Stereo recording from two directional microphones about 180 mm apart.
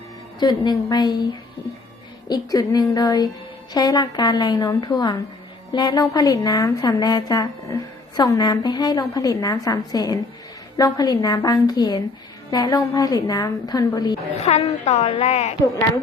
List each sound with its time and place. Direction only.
0.3 s a woman's voice: 25° left (ahead or behind)
2.3 s a woman's voice: 20° left (ahead or behind)
14.3 s a woman's voice: 40° left (ahead or behind)